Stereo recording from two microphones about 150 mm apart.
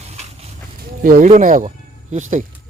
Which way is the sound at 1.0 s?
65° right (ahead or behind).